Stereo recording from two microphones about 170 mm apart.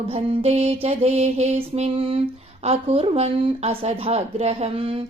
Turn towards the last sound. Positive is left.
turn(degrees=-35)  # may be behind; listen again after turning